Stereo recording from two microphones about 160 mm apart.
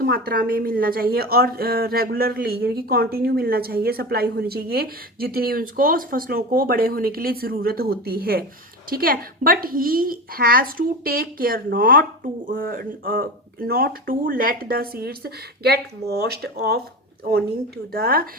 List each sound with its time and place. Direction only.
0.0 s a woman's voice: 70° right (ahead or behind); by 16.8 s 85° right
17.9 s a woman's voice: 70° right (ahead or behind)